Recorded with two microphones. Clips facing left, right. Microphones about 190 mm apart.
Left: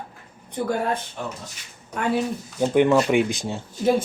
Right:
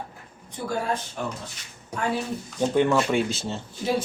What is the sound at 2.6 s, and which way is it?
Speech, 15° left (ahead or behind).